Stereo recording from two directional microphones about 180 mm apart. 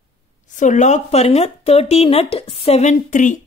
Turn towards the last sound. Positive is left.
turn(degrees=45)  # may be behind; listen again after turning